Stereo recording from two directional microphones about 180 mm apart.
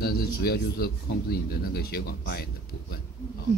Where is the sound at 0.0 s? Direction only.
55° left (ahead or behind).